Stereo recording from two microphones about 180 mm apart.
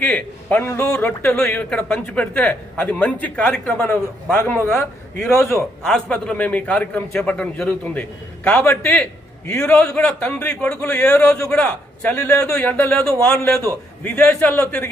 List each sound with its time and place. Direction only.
0.0 s a man's voice: 10° left (ahead or behind)